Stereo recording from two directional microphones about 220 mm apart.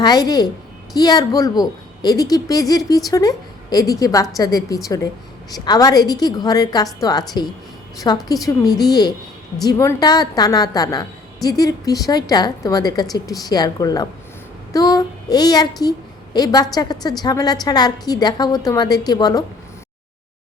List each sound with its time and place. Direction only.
0.0 s speech: 20° left (ahead or behind)